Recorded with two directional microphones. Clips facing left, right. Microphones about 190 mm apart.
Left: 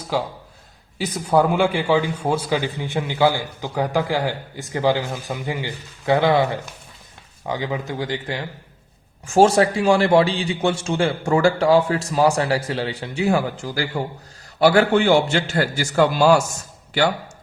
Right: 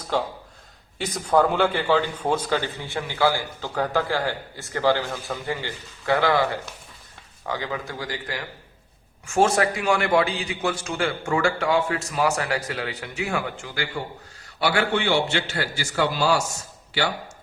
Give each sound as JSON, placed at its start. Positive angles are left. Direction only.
{"t": 0.1, "sound": "a man's voice", "side_deg": 10}